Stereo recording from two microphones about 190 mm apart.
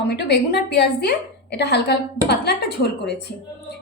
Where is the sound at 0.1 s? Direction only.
60° left (ahead or behind).